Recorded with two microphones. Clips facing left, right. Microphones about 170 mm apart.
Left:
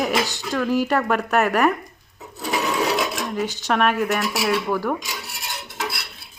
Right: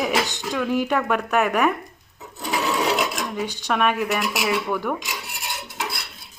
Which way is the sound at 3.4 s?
15° right (ahead or behind).